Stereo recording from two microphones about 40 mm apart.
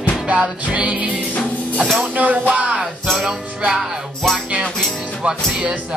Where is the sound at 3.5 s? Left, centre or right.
Right.